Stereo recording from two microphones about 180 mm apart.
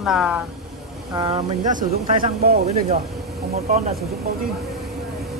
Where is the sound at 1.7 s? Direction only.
55° right (ahead or behind).